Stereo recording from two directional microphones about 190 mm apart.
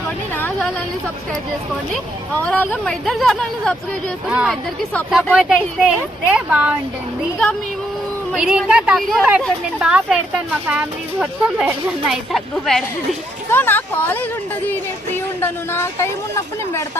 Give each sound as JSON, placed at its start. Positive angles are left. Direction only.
{"t": 0.3, "sound": "a sound", "side_deg": 10}
{"t": 2.4, "sound": "speech", "side_deg": 5}
{"t": 8.3, "sound": "speech", "side_deg": -5}